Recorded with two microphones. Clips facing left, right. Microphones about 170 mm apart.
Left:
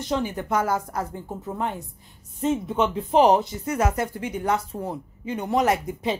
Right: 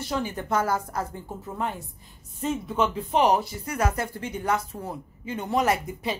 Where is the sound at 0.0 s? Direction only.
15° left (ahead or behind).